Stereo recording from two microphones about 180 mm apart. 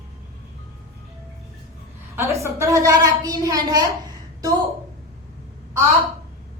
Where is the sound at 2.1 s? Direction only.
15° right (ahead or behind).